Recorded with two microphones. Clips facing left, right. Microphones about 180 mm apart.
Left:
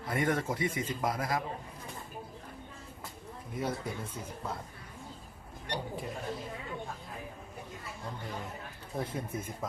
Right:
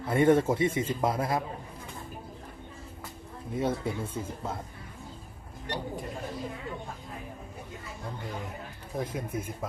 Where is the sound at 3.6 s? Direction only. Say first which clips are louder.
Right 5 dB; 25° right (ahead or behind).